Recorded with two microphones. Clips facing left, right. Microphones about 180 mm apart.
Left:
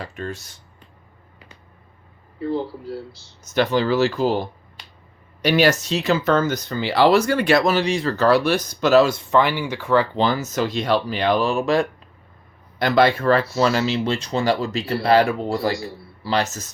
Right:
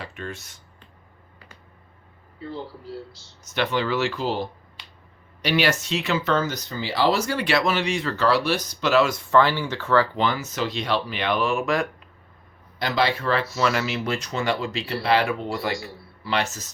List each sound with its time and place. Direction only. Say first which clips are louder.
0.0 s speech: left 4 dB; 40° left (ahead or behind)
2.4 s speech: left 9 dB; 60° left (ahead or behind)
3.5 s speech: left 5 dB; 40° left (ahead or behind)
9.3 s speech: left 1 dB; 15° left (ahead or behind)
10.2 s speech: left 4 dB; 40° left (ahead or behind)
12.8 s speech: left 6 dB; 55° left (ahead or behind)
13.6 s speech: left 4 dB; 30° left (ahead or behind)